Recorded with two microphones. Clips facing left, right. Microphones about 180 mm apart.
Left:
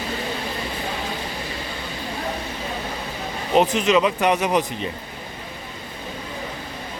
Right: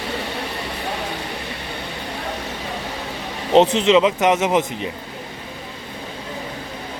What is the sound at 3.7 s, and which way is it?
Speech, 25° right (ahead or behind).